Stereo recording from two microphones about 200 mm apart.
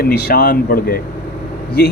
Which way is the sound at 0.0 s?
50° left (ahead or behind).